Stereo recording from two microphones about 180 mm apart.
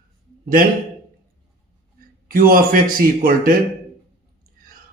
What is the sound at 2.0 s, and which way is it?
A man's voice, 55° right (ahead or behind).